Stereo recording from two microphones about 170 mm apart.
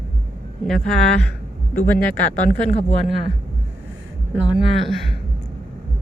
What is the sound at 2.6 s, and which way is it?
Speech, 45° left (ahead or behind).